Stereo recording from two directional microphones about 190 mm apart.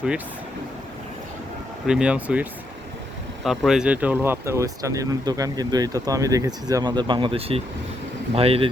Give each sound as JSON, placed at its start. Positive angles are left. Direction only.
{"t": 1.9, "sound": "speech", "side_deg": -5}